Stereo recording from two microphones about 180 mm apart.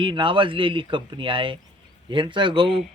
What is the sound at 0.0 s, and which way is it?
Speech, 25° right (ahead or behind).